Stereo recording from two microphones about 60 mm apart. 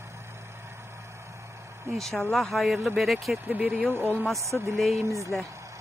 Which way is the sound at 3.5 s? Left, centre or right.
Right.